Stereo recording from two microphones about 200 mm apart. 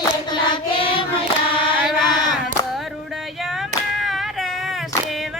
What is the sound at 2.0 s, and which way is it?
Hands, 20° left (ahead or behind).